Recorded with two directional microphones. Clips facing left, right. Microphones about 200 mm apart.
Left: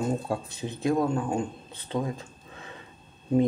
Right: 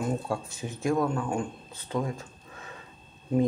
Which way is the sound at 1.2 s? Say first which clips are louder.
Left 2 dB; 20° left (ahead or behind).